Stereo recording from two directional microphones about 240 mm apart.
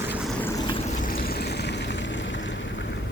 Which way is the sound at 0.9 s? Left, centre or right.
Left.